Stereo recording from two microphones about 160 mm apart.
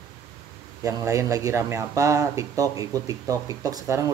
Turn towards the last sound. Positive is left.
turn(degrees=-20)  # may be behind; listen again after turning